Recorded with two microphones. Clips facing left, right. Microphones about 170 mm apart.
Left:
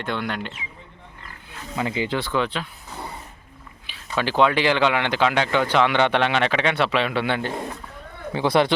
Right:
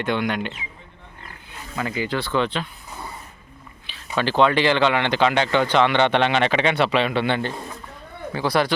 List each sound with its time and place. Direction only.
0.0 s speech: centre (ahead or behind)
1.7 s speech: 20° left (ahead or behind)
2.3 s speech: 5° left (ahead or behind)
4.2 s speech: 10° left (ahead or behind)
8.3 s speech: 20° left (ahead or behind)